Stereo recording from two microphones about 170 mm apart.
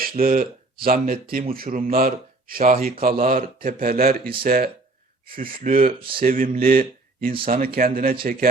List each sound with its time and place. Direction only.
0.0 s speech: 55° right (ahead or behind)
5.9 s speech: 30° right (ahead or behind)
6.1 s speech: 55° right (ahead or behind)